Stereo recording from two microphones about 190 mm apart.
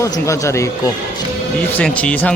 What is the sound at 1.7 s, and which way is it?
Speech, 5° left (ahead or behind).